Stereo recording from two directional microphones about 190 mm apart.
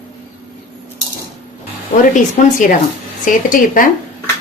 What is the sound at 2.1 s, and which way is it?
A woman's voice, 45° left (ahead or behind).